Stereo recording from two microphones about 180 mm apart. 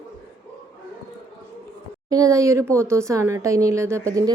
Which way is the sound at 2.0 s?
20° right (ahead or behind).